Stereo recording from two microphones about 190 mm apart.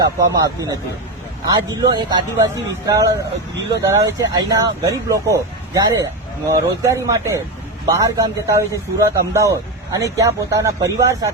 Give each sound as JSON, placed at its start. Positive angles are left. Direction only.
{"t": 0.0, "sound": "a man's voice", "side_deg": -20}